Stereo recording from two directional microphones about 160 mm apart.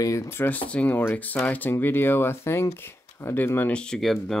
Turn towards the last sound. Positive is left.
turn(degrees=0)  # may be behind; listen again after turning